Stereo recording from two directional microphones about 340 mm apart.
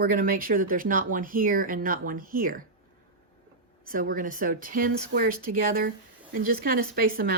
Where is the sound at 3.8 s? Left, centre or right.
Right.